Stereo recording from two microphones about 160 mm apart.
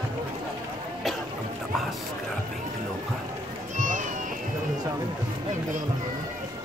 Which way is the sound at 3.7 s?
50° right (ahead or behind).